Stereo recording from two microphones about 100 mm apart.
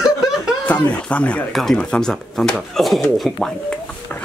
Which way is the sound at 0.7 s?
15° left (ahead or behind).